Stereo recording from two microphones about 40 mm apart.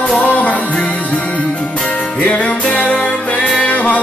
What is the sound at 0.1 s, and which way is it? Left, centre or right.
Music, left.